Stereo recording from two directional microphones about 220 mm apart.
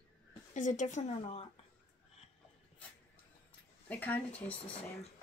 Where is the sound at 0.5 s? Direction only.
35° left (ahead or behind).